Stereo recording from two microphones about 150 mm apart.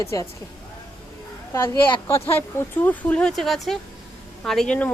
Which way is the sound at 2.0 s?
15° left (ahead or behind).